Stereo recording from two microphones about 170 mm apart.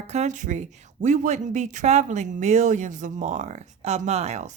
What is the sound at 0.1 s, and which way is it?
Speech, 45° right (ahead or behind).